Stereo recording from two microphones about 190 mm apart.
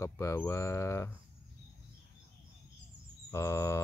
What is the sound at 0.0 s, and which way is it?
Speech, 15° left (ahead or behind).